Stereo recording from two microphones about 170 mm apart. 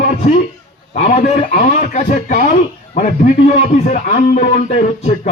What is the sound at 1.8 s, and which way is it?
A man's voice, 45° left (ahead or behind).